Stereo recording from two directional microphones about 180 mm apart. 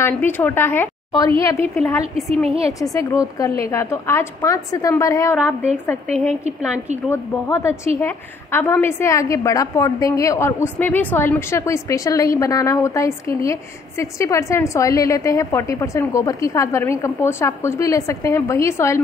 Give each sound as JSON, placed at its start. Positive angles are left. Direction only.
{"t": 0.0, "sound": "a woman's voice", "side_deg": 10}
{"t": 7.1, "sound": "a woman's voice", "side_deg": 15}